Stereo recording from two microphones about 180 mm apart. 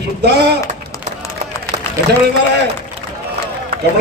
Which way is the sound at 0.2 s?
65° right (ahead or behind).